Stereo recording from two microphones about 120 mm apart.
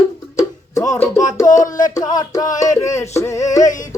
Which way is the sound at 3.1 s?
25° left (ahead or behind).